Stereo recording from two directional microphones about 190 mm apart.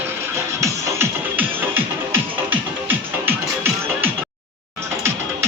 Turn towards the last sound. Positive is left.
turn(degrees=-10)  # may be behind; listen again after turning